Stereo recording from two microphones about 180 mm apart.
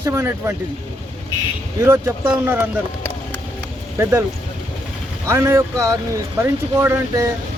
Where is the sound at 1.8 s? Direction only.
15° right (ahead or behind).